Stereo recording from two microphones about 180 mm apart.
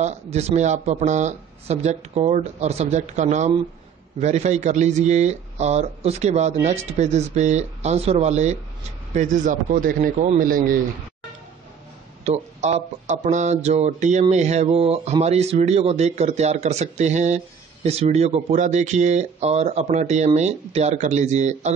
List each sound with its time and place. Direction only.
0.0 s a man's voice: 40° right (ahead or behind)
12.3 s a man's voice: 35° right (ahead or behind)